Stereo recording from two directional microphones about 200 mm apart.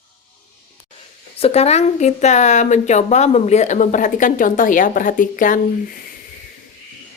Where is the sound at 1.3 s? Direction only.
30° left (ahead or behind).